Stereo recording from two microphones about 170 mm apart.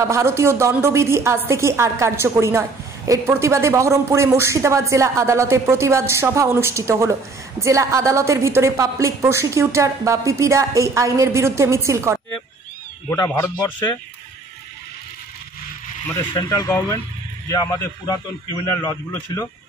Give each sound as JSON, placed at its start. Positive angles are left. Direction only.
{"t": 0.0, "sound": "a woman's voice", "side_deg": -15}
{"t": 13.1, "sound": "a man's voice", "side_deg": 15}
{"t": 16.3, "sound": "a man's voice", "side_deg": 20}